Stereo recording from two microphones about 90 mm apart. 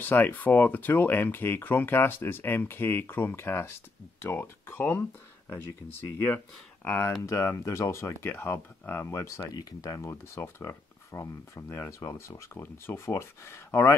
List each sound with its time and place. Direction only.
0.0 s speech: 20° left (ahead or behind)
6.1 s speech: 20° left (ahead or behind)
7.2 s speech: 35° left (ahead or behind)
9.5 s speech: 45° left (ahead or behind); by 13.9 s 25° left (ahead or behind)